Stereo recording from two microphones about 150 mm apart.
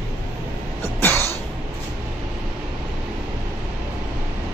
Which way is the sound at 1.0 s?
15° left (ahead or behind).